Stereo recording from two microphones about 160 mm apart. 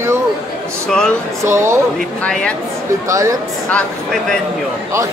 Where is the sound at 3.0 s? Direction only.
20° right (ahead or behind).